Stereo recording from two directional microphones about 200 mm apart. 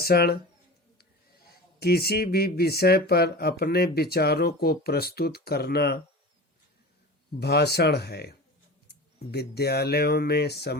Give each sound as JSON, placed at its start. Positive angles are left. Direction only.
{"t": 0.0, "sound": "speech", "side_deg": 50}
{"t": 1.8, "sound": "speech", "side_deg": 50}
{"t": 7.3, "sound": "speech", "side_deg": 55}